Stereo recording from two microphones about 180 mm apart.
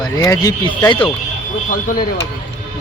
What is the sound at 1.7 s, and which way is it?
Speech, 50° left (ahead or behind).